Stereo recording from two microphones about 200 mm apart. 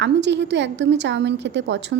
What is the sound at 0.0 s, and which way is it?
A woman's voice, 60° right (ahead or behind).